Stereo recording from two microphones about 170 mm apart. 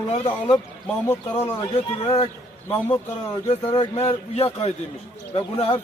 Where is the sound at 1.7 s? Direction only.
35° left (ahead or behind).